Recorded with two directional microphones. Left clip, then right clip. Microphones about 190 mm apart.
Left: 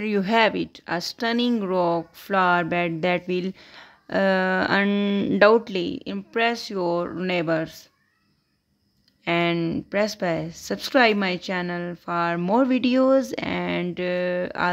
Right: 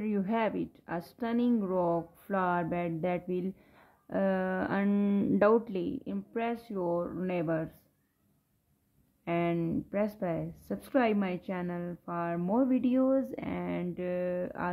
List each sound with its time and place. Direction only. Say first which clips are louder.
0.0 s speech: left 11 dB; 30° left (ahead or behind)
9.2 s speech: left 9 dB; 30° left (ahead or behind)